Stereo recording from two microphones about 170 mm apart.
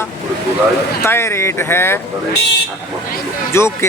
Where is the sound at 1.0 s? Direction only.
15° left (ahead or behind).